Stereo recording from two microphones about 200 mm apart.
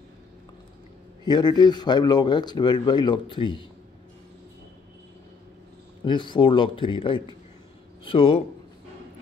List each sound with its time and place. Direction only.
1.2 s speech: 20° left (ahead or behind)
6.0 s speech: 25° left (ahead or behind)